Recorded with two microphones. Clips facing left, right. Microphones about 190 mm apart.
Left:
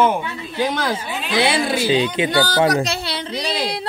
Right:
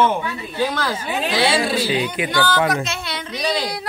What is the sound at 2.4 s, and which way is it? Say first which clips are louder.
Speech: left 1 dB; 40° left (ahead or behind).